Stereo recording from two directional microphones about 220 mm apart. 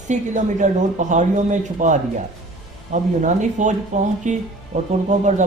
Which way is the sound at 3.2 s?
35° right (ahead or behind).